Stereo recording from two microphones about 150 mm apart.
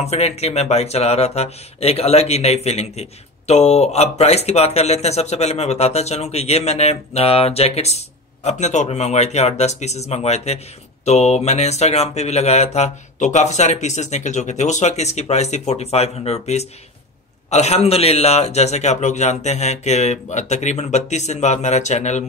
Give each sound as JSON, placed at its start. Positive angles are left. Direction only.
{"t": 0.0, "sound": "speech", "side_deg": 45}